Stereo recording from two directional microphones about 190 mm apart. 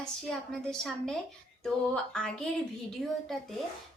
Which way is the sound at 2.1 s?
5° left (ahead or behind).